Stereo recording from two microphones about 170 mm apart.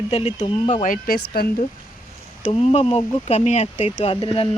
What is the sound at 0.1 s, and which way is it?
Speech, 35° left (ahead or behind).